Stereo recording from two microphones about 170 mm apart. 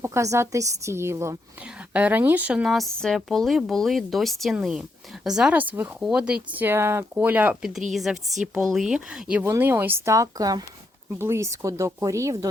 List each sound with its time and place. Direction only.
0.0 s speech: 15° right (ahead or behind)